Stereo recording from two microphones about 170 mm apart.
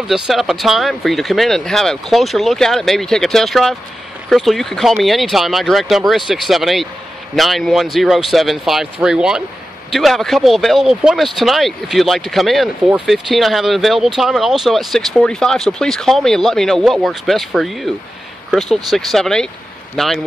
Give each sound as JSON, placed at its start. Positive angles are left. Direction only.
{"t": 0.1, "sound": "speech", "side_deg": 0}